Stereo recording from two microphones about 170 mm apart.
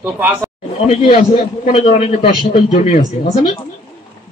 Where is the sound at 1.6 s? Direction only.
45° left (ahead or behind).